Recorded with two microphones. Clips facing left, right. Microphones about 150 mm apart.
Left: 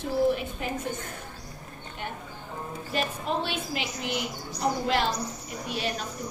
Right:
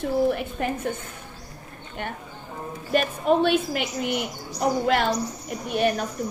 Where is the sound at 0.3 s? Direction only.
55° right (ahead or behind).